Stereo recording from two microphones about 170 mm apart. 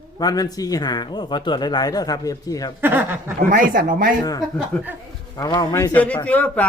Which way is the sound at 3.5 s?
55° right (ahead or behind).